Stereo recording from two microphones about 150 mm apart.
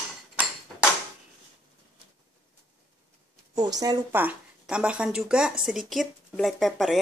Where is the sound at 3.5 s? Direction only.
25° right (ahead or behind).